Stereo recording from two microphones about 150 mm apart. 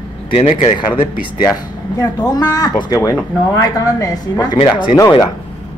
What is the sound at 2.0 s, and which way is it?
Speech, 25° left (ahead or behind).